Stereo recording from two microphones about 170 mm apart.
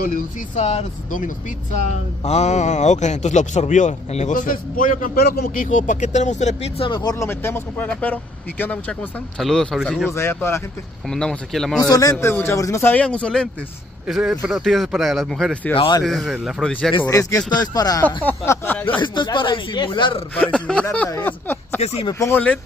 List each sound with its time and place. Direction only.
0.6 s speech: 40° left (ahead or behind); by 5.4 s 65° left (ahead or behind)
5.4 s speech: 50° left (ahead or behind)
6.9 s speech: 25° left (ahead or behind); by 10.0 s centre (ahead or behind)
10.1 s speech: 15° left (ahead or behind)
11.1 s speech: 5° left (ahead or behind)
11.8 s speech: 20° left (ahead or behind); by 15.7 s 5° left (ahead or behind)
15.7 s speech: 30° left (ahead or behind)
16.0 s speech: centre (ahead or behind)
17.0 s speech: 20° left (ahead or behind)
18.9 s speech: 25° left (ahead or behind)
20.3 s speech: 5° left (ahead or behind)
21.8 s speech: 30° left (ahead or behind)
22.2 s speech: 10° left (ahead or behind)